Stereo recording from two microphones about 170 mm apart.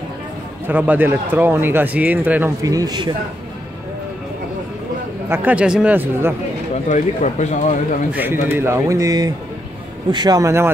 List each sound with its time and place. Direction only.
0.7 s speech: 10° right (ahead or behind)
2.6 s a man's voice: 20° right (ahead or behind)
5.3 s speech: 10° right (ahead or behind)
6.9 s speech: 45° left (ahead or behind)
8.1 s a man's voice: 10° right (ahead or behind)